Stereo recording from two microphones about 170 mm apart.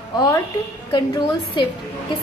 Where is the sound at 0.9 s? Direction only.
25° left (ahead or behind).